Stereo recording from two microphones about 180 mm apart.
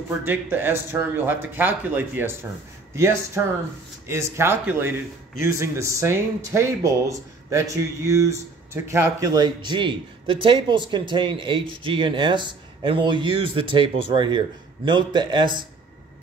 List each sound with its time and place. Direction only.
0.2 s speech: 10° right (ahead or behind)
4.1 s speech: 15° right (ahead or behind)